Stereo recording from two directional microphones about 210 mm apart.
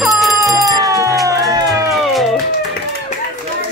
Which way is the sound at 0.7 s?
15° right (ahead or behind).